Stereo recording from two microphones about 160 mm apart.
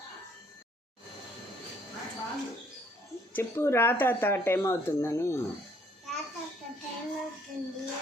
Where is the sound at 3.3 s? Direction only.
15° left (ahead or behind).